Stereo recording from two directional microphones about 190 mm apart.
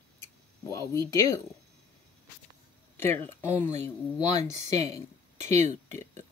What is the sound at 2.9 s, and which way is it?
Speech, 10° left (ahead or behind).